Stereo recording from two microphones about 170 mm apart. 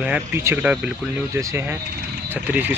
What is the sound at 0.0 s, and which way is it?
Speech, 10° right (ahead or behind).